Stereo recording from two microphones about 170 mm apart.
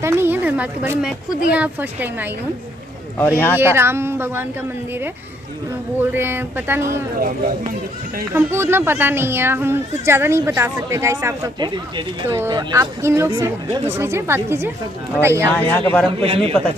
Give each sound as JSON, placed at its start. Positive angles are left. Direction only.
{"t": 0.0, "sound": "a woman's voice", "side_deg": -15}
{"t": 3.2, "sound": "speech", "side_deg": 10}
{"t": 3.5, "sound": "a woman's voice", "side_deg": -15}
{"t": 5.9, "sound": "a woman's voice", "side_deg": -15}
{"t": 7.2, "sound": "speech", "side_deg": -55}
{"t": 8.4, "sound": "a woman's voice", "side_deg": -15}
{"t": 15.5, "sound": "speech", "side_deg": 10}
{"t": 16.1, "sound": "speech", "side_deg": -35}